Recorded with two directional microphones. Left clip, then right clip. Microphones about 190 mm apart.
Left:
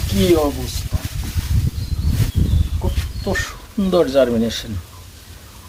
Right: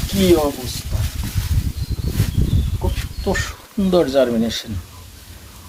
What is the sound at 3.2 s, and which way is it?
Speech, 20° right (ahead or behind).